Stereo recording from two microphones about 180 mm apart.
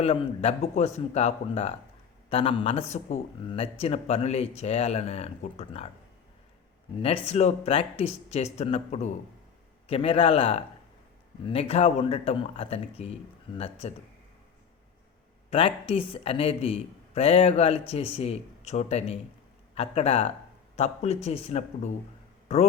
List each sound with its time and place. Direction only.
0.0 s a man's voice: 35° left (ahead or behind)
7.0 s a man's voice: 35° left (ahead or behind)
15.4 s a man's voice: 30° left (ahead or behind)